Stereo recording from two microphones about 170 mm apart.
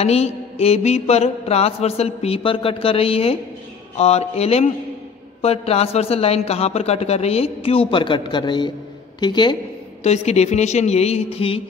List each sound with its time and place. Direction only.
0.0 s mantra: 40° left (ahead or behind)
9.2 s a woman's voice: 25° left (ahead or behind)
10.0 s mantra: 40° left (ahead or behind)